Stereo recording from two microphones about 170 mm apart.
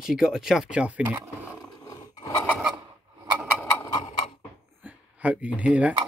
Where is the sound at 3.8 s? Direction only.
25° left (ahead or behind).